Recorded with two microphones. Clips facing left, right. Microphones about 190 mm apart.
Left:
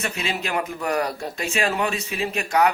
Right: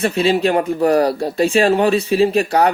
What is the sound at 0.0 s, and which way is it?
A man's voice, 30° right (ahead or behind).